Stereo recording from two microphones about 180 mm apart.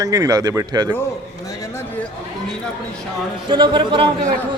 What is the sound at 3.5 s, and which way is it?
Speech, 25° right (ahead or behind).